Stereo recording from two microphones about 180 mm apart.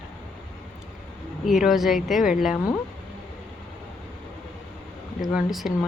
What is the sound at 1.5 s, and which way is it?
Speech, centre (ahead or behind).